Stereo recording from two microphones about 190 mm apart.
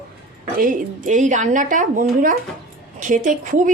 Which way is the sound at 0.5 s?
45° right (ahead or behind).